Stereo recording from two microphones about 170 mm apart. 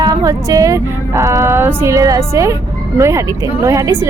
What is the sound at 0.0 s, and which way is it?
Speech, 20° right (ahead or behind).